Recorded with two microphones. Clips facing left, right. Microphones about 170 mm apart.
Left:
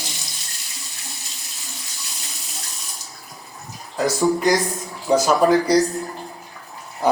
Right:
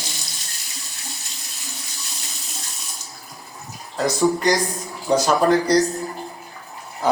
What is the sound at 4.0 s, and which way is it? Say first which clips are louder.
Speech: even; 5° left (ahead or behind).